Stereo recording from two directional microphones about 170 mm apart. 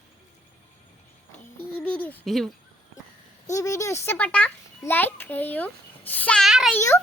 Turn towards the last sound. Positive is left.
turn(degrees=15)  # may be behind; listen again after turning